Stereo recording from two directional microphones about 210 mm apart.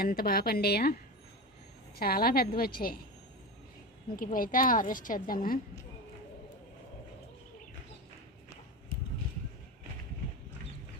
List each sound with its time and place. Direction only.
0.0 s a woman's voice: 45° left (ahead or behind)
2.0 s a woman's voice: 45° left (ahead or behind)
4.2 s a woman's voice: 40° left (ahead or behind)